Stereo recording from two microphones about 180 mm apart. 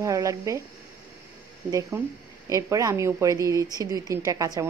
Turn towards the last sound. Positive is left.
turn(degrees=-20)  # may be behind; listen again after turning